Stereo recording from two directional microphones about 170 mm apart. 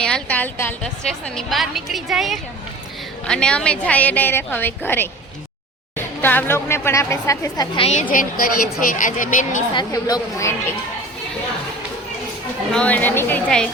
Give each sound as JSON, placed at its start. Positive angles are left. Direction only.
{"t": 0.0, "sound": "a woman's voice", "side_deg": 5}
{"t": 8.1, "sound": "a woman's voice", "side_deg": 55}
{"t": 9.7, "sound": "a woman's voice", "side_deg": 20}
{"t": 12.7, "sound": "a woman's voice", "side_deg": 10}